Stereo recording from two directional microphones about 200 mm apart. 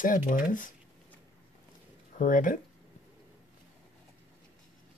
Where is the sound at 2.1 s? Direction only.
40° left (ahead or behind).